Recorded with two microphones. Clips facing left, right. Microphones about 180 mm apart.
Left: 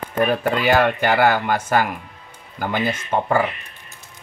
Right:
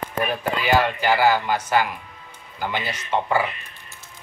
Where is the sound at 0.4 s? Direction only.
55° left (ahead or behind).